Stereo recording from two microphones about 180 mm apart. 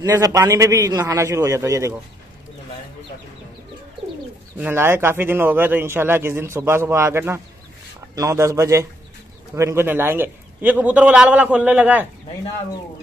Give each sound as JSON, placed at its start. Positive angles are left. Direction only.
{"t": 0.0, "sound": "a man's voice", "side_deg": -20}
{"t": 4.6, "sound": "a man's voice", "side_deg": -10}